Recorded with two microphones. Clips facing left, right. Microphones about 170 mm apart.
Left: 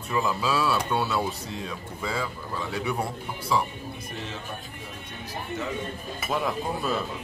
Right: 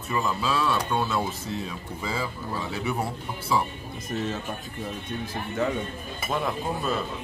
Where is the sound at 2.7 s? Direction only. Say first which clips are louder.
Left 1 dB; 5° right (ahead or behind).